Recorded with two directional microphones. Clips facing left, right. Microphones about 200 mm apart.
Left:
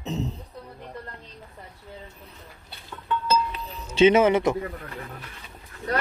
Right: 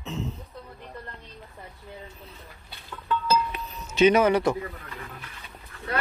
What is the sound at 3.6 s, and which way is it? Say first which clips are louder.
Music: left 3 dB; 30° left (ahead or behind).